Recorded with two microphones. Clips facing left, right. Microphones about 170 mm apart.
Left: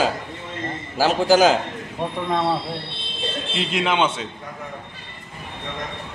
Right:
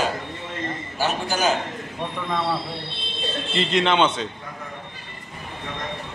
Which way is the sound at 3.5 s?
5° left (ahead or behind).